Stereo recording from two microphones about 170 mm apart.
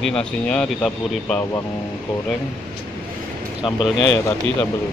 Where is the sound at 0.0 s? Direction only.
5° left (ahead or behind).